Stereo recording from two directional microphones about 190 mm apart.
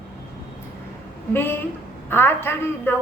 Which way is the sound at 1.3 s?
10° left (ahead or behind).